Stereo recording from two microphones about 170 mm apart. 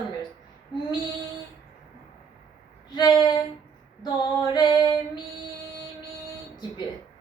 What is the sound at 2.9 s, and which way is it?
Speech, 25° left (ahead or behind).